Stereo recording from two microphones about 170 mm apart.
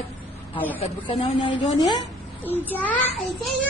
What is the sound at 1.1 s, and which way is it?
Speech, 30° left (ahead or behind).